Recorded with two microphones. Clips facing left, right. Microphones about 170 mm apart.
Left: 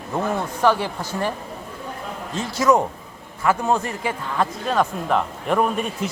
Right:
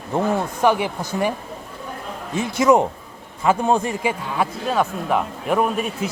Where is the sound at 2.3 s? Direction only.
20° right (ahead or behind).